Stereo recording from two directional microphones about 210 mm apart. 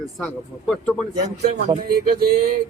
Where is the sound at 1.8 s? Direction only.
45° right (ahead or behind).